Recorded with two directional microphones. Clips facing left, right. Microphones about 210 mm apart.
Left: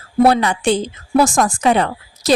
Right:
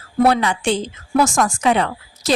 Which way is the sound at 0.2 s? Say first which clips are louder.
Left 3 dB; 40° left (ahead or behind).